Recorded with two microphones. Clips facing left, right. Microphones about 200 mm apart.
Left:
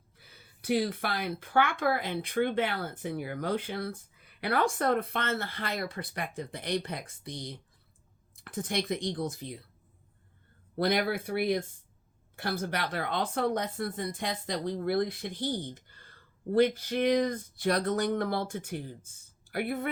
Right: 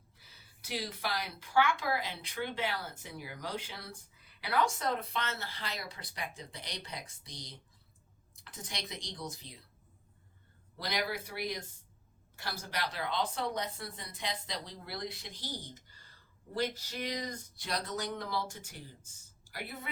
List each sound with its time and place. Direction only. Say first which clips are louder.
0.2 s speech: left 7 dB; 55° left (ahead or behind)
10.8 s speech: left 9 dB; 55° left (ahead or behind)